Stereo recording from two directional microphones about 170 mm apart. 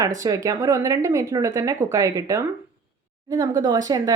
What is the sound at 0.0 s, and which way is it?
Speech, 20° right (ahead or behind).